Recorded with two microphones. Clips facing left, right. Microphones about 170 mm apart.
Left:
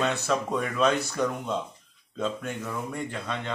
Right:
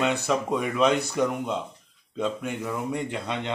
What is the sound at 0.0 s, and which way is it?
Speech, 15° right (ahead or behind).